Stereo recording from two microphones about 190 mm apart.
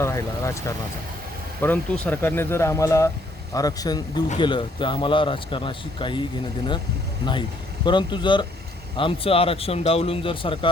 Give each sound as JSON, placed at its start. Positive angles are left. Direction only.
{"t": 0.0, "sound": "speech", "side_deg": 15}
{"t": 7.9, "sound": "speech", "side_deg": 25}